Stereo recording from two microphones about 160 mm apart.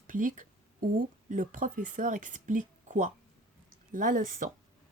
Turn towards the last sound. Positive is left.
turn(degrees=-55)  # may be behind; listen again after turning